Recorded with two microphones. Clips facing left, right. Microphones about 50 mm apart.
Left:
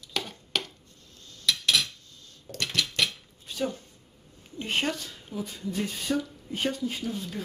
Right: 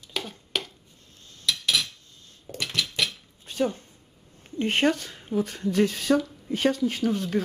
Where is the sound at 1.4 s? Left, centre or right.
Centre.